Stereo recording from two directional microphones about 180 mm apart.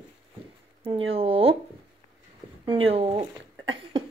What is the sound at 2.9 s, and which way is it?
Speech, 30° right (ahead or behind).